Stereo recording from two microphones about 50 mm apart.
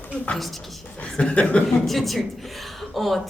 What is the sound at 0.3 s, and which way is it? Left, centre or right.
Speech, centre.